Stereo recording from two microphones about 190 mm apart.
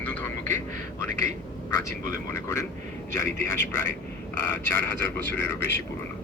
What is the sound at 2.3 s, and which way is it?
Speech, 15° left (ahead or behind).